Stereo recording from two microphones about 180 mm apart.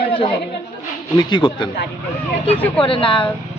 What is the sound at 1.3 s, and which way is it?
Speech, 25° left (ahead or behind).